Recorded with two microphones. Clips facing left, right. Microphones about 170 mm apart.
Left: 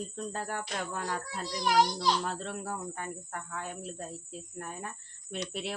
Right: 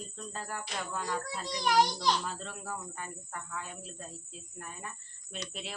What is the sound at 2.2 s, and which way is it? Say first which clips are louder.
Speech: left 4 dB; 60° left (ahead or behind).